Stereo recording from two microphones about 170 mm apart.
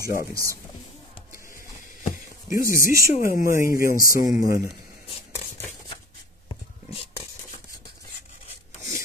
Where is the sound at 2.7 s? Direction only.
55° left (ahead or behind).